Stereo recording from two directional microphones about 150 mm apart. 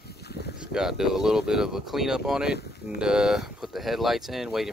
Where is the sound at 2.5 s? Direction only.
90° left.